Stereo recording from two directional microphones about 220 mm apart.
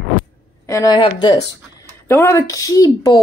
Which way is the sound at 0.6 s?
15° left (ahead or behind).